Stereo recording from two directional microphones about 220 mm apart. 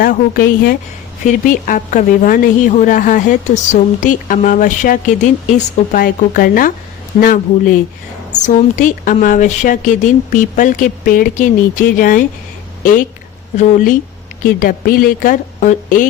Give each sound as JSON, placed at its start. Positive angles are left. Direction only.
{"t": 0.0, "sound": "a woman's voice", "side_deg": 40}